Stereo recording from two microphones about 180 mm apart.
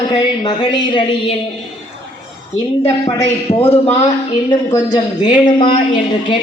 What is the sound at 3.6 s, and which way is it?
Speech, 35° left (ahead or behind).